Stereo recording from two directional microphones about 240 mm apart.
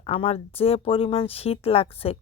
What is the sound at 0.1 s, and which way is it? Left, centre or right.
Speech, left.